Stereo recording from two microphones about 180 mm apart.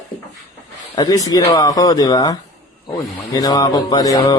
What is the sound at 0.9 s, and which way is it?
Speech, 20° left (ahead or behind).